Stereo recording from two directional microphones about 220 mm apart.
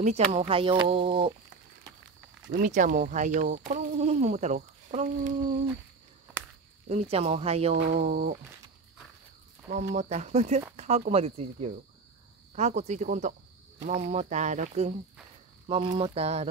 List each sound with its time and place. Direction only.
0.0 s speech: 30° right (ahead or behind)
2.6 s speech: 35° right (ahead or behind)
6.9 s speech: 30° right (ahead or behind)
9.9 s speech: 30° right (ahead or behind)